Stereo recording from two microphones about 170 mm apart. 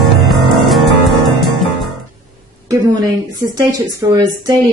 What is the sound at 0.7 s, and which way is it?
Music, centre (ahead or behind).